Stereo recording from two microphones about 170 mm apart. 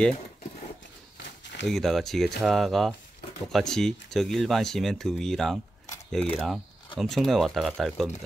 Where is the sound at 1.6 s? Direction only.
Centre (ahead or behind).